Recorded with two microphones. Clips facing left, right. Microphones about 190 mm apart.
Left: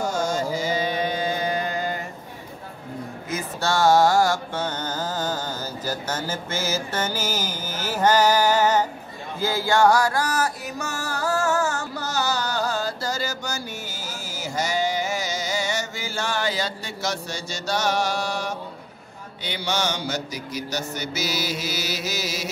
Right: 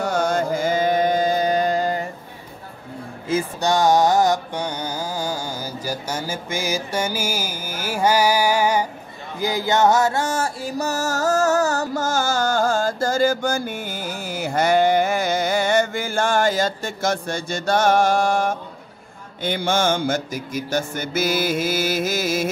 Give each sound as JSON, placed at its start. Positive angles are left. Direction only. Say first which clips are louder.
{"t": 0.0, "sound": "music", "louder": "right 4 dB", "side_deg": -60}
{"t": 3.3, "sound": "speech", "louder": "right 9 dB", "side_deg": -30}
{"t": 3.6, "sound": "music", "louder": "even", "side_deg": -15}
{"t": 19.4, "sound": "mantra", "louder": "right 6 dB", "side_deg": -50}